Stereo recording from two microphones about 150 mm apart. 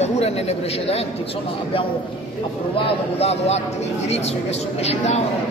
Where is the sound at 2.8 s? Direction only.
45° left (ahead or behind).